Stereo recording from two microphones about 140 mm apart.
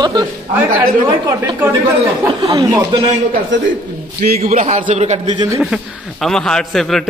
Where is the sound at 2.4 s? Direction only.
30° right (ahead or behind).